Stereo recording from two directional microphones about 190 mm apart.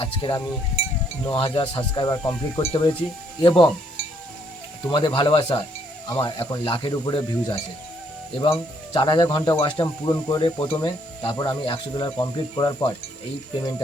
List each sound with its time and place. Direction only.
0.0 s speech: 25° left (ahead or behind)